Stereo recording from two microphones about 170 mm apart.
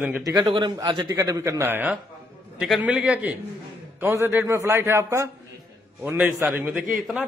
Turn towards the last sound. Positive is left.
turn(degrees=-5)  # may be behind; listen again after turning